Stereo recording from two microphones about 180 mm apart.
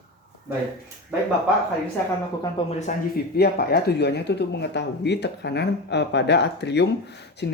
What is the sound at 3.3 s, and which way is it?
Speech, 60° left (ahead or behind).